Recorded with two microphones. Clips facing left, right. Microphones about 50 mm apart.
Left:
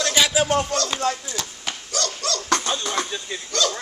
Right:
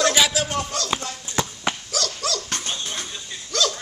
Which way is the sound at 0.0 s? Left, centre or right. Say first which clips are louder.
Even; centre.